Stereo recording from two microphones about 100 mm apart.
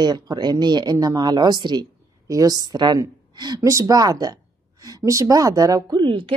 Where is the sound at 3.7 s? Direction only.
35° right (ahead or behind).